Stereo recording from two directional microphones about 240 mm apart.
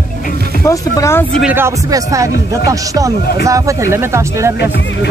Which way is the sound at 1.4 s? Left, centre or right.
Centre.